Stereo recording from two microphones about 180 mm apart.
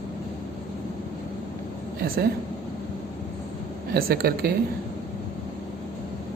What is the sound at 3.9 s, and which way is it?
Speech, 60° right (ahead or behind).